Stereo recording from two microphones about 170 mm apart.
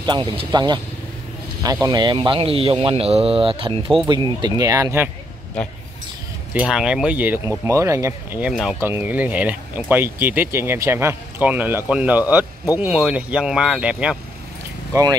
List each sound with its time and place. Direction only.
0.0 s speech: 30° right (ahead or behind)
6.5 s speech: 5° right (ahead or behind)
8.7 s speech: 15° right (ahead or behind)
14.9 s speech: 20° right (ahead or behind)